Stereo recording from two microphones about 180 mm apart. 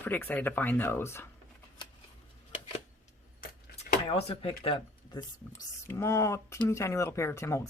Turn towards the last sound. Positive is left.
turn(degrees=15)  # may be behind; listen again after turning